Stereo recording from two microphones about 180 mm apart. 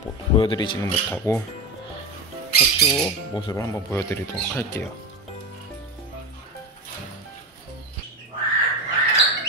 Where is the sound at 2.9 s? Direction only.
20° left (ahead or behind).